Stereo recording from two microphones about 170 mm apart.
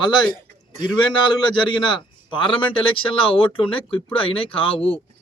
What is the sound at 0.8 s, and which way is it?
A man's voice, 25° left (ahead or behind).